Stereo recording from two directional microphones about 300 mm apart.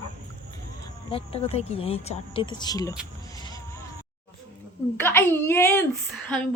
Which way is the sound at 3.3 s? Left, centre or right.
Centre.